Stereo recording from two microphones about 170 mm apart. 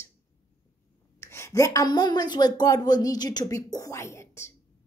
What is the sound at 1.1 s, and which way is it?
Speech, 15° left (ahead or behind).